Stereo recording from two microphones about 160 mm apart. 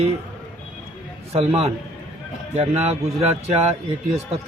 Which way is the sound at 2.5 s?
40° right (ahead or behind).